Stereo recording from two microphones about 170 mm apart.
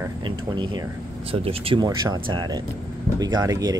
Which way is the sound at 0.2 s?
30° right (ahead or behind).